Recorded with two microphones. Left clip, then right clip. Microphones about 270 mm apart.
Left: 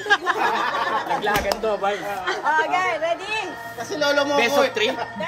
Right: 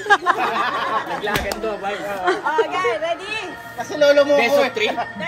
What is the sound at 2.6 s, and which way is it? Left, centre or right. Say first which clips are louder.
Speech: right 1 dB; left.